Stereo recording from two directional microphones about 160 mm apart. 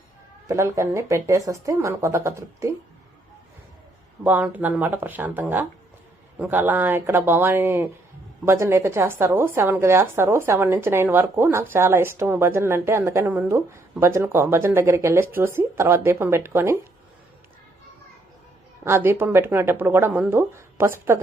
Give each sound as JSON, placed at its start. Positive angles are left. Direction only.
{"t": 0.4, "sound": "a woman's voice", "side_deg": -15}
{"t": 4.2, "sound": "a woman's voice", "side_deg": -10}
{"t": 18.9, "sound": "a woman's voice", "side_deg": -15}